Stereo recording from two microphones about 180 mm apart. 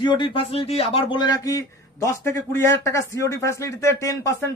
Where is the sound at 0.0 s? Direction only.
25° left (ahead or behind).